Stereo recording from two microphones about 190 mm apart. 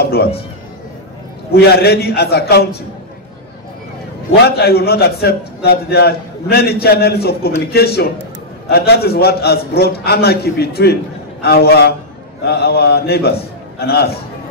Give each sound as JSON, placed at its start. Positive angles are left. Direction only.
{"t": 0.0, "sound": "speech", "side_deg": 55}
{"t": 1.5, "sound": "a man's voice", "side_deg": 55}
{"t": 4.5, "sound": "a man's voice", "side_deg": 55}